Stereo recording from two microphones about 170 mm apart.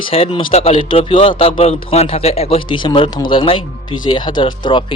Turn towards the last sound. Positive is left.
turn(degrees=30)  # may be behind; listen again after turning